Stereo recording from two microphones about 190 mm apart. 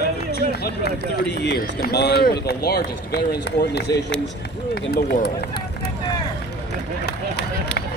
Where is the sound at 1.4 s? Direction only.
55° left (ahead or behind).